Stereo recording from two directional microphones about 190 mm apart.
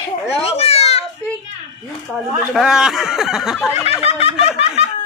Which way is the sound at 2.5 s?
Centre (ahead or behind).